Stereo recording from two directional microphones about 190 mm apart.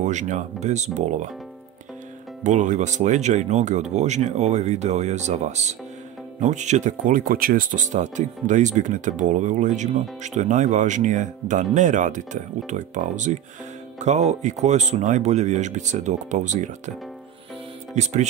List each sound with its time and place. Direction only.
0.0 s speech: 40° right (ahead or behind)
2.4 s speech: 40° right (ahead or behind)
17.9 s speech: 35° right (ahead or behind)